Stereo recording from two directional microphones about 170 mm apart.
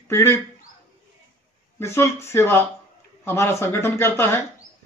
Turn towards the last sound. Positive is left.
turn(degrees=15)  # may be behind; listen again after turning